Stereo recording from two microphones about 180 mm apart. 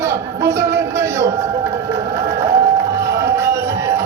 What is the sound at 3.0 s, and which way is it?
Music, 15° right (ahead or behind).